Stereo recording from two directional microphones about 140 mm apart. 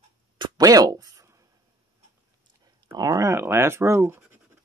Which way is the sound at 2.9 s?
25° right (ahead or behind).